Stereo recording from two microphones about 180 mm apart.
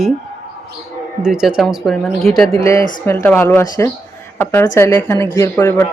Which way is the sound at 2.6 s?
15° left (ahead or behind).